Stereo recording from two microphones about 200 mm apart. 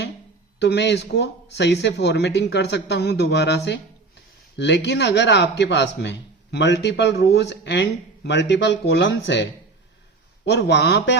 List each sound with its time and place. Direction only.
0.6 s speech: 60° left (ahead or behind)